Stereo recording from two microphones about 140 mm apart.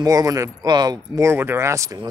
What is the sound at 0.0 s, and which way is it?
Speech, 25° right (ahead or behind).